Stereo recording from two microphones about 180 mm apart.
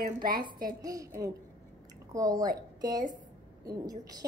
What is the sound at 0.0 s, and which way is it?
Speech, 50° right (ahead or behind).